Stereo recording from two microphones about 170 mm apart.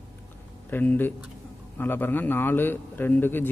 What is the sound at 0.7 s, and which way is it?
A man's voice, 10° left (ahead or behind).